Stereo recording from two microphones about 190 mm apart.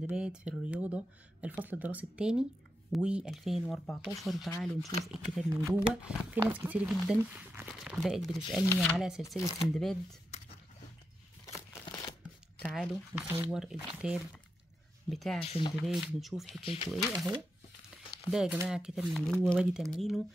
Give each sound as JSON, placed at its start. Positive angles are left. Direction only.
{"t": 0.0, "sound": "speech", "side_deg": -5}
{"t": 11.4, "sound": "a sound", "side_deg": 20}
{"t": 12.7, "sound": "speech", "side_deg": -5}
{"t": 15.4, "sound": "speech", "side_deg": 30}
{"t": 15.7, "sound": "speech", "side_deg": 0}
{"t": 16.6, "sound": "speech", "side_deg": 30}
{"t": 16.9, "sound": "speech", "side_deg": 0}
{"t": 18.3, "sound": "speech", "side_deg": -5}